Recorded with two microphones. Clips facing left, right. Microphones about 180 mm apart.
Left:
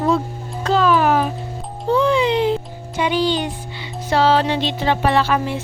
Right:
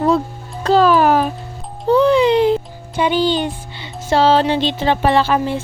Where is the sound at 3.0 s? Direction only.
30° right (ahead or behind).